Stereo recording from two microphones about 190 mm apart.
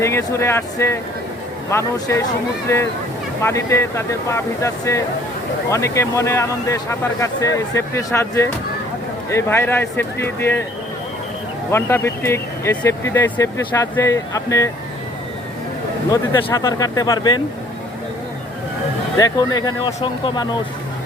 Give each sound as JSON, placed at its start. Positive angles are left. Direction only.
{"t": 0.0, "sound": "speech", "side_deg": 15}
{"t": 11.7, "sound": "speech", "side_deg": 15}
{"t": 16.0, "sound": "speech", "side_deg": 20}
{"t": 19.1, "sound": "speech", "side_deg": 20}